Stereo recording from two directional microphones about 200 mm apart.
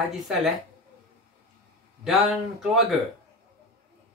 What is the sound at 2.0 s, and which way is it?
Speech, centre (ahead or behind).